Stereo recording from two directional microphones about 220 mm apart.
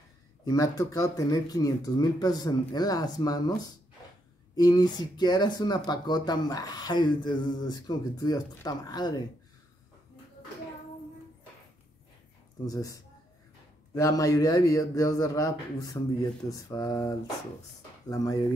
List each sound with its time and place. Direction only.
0.5 s speech: 15° left (ahead or behind)
12.6 s speech: 15° left (ahead or behind)